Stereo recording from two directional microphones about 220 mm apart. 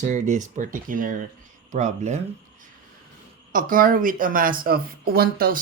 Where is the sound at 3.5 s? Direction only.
40° right (ahead or behind).